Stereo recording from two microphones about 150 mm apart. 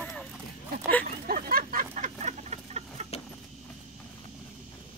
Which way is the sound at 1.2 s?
75° right (ahead or behind).